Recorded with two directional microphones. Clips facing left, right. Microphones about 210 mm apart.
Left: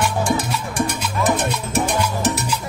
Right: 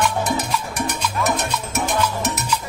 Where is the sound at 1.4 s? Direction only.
30° left (ahead or behind).